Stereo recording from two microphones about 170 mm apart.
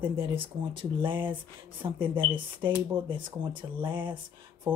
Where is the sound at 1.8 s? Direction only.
25° right (ahead or behind).